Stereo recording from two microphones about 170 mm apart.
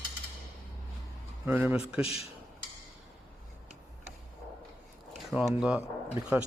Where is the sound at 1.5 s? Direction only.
10° right (ahead or behind).